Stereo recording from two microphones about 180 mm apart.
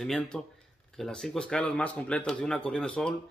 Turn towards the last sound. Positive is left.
turn(degrees=5)  # may be behind; listen again after turning